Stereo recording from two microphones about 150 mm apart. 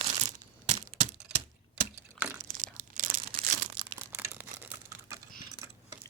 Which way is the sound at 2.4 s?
65° right (ahead or behind).